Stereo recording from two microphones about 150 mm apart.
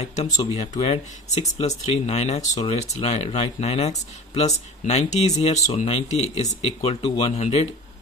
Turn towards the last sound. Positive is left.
turn(degrees=45)  # may be behind; listen again after turning